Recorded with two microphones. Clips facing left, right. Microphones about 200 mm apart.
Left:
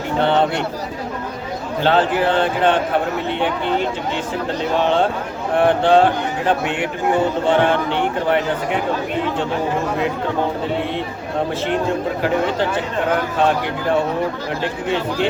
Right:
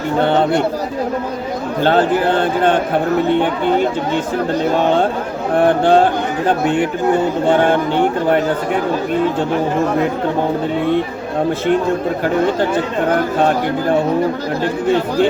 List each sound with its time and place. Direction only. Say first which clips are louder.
0.3 s speech: right 2 dB; 45° right (ahead or behind)
1.8 s speech: right 2 dB; 45° right (ahead or behind)
5.5 s speech: right 2 dB; 45° right (ahead or behind)
7.4 s speech: right 3 dB; 45° right (ahead or behind)
14.6 s speech: right 6 dB; 45° right (ahead or behind)